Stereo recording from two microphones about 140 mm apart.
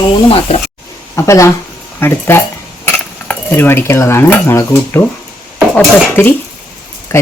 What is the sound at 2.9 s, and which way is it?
Cutlery, 15° left (ahead or behind).